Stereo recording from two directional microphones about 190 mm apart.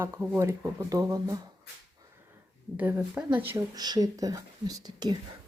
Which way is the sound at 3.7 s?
20° right (ahead or behind).